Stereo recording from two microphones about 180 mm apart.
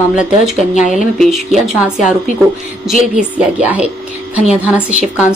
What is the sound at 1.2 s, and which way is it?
Speech, centre (ahead or behind).